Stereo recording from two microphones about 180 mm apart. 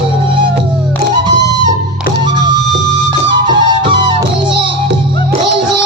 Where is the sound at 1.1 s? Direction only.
25° right (ahead or behind).